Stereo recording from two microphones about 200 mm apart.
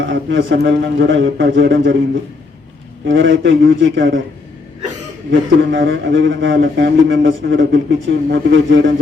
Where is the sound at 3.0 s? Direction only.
65° right (ahead or behind).